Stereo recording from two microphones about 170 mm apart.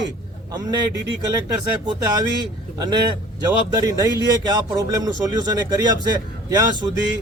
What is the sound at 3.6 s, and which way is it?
A man's voice, 20° right (ahead or behind).